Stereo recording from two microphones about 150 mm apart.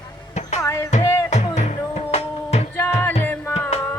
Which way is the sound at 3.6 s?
45° left (ahead or behind).